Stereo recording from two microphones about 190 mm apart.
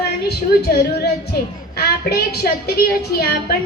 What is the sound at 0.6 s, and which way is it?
A woman's voice, 60° left (ahead or behind).